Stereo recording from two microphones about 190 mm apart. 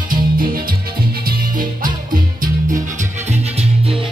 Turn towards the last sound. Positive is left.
turn(degrees=-30)  # may be behind; listen again after turning